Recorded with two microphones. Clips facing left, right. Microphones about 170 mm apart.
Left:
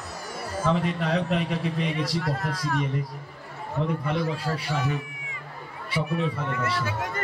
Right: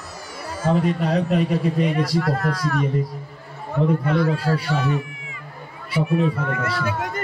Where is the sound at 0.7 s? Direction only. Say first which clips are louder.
Right 5 dB; 40° right (ahead or behind).